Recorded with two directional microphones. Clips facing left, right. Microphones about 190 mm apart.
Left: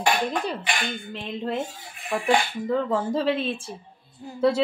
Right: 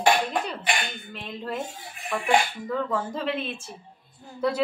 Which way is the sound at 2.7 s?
25° left (ahead or behind).